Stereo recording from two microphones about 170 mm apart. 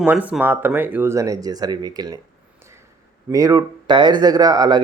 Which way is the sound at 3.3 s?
20° right (ahead or behind).